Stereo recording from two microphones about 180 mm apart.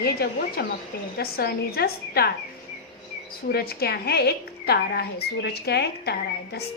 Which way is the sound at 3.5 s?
60° left (ahead or behind).